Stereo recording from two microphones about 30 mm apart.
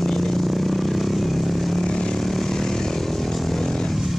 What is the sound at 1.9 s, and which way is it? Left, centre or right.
Vehicle, left.